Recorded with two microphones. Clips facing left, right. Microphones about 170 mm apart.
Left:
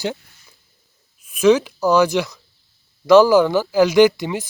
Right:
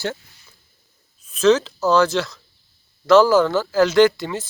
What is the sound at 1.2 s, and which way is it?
Speech, 10° left (ahead or behind).